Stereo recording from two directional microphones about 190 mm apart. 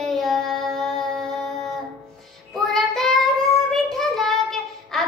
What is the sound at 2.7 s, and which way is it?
Child singing, 5° left (ahead or behind).